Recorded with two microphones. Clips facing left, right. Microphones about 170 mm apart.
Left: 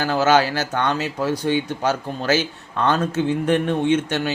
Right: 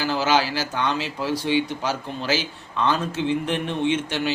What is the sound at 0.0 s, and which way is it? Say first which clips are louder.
Speech: left 4 dB; 50° left (ahead or behind).